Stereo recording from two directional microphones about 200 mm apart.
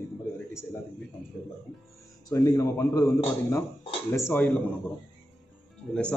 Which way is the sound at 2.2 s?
15° left (ahead or behind).